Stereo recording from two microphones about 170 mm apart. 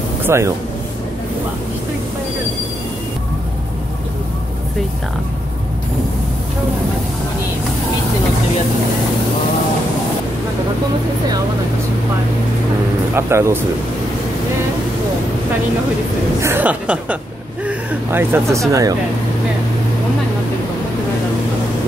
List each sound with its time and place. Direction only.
0.3 s speech: 15° right (ahead or behind)
13.1 s speech: 15° right (ahead or behind)
16.3 s speech: 15° right (ahead or behind)